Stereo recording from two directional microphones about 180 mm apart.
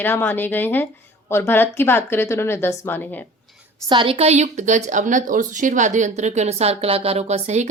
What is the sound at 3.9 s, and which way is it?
A woman's voice, 30° right (ahead or behind).